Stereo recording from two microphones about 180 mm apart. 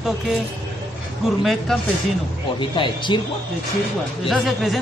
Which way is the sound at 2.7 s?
25° left (ahead or behind).